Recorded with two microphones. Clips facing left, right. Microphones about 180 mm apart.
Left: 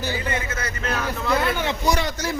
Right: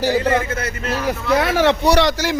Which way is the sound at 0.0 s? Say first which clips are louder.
Right 9 dB; 80° right.